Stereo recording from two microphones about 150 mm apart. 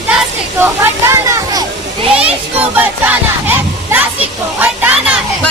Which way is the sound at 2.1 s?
10° right (ahead or behind).